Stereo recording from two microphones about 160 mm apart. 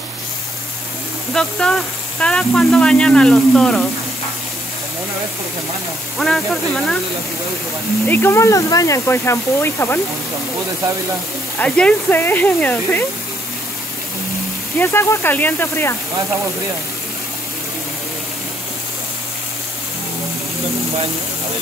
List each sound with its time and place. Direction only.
1.3 s speech: 5° left (ahead or behind)
6.1 s speech: centre (ahead or behind)
8.1 s speech: 15° left (ahead or behind)
11.6 s speech: 10° left (ahead or behind)
14.8 s speech: 15° left (ahead or behind)